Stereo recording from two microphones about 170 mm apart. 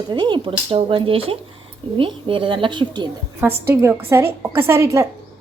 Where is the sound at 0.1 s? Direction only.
25° right (ahead or behind).